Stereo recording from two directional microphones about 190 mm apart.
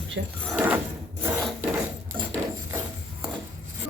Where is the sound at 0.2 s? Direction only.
65° right (ahead or behind).